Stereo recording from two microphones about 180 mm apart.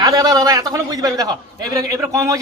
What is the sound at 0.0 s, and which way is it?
A man's voice, 20° right (ahead or behind).